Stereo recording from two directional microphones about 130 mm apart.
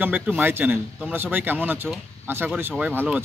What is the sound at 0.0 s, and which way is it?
Speech, 15° right (ahead or behind).